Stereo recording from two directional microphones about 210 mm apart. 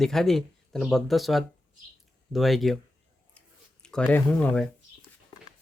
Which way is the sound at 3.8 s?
5° left (ahead or behind).